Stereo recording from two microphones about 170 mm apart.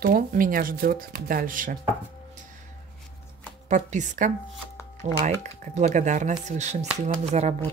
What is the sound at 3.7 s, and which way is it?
Speech, 45° right (ahead or behind).